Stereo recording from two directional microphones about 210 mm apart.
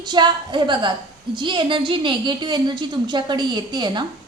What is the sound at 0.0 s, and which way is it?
A woman's voice, 20° right (ahead or behind).